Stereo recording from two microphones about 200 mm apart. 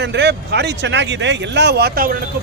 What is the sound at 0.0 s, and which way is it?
Speech, 55° right (ahead or behind).